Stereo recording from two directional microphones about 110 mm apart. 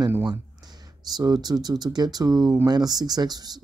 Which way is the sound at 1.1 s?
40° right (ahead or behind).